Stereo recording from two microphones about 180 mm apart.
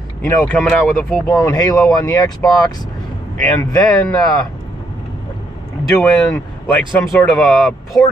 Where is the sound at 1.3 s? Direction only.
20° left (ahead or behind).